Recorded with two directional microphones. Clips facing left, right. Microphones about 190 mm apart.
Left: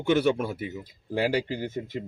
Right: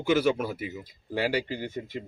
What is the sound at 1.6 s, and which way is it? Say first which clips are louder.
Speech: left 2 dB; 45° left (ahead or behind).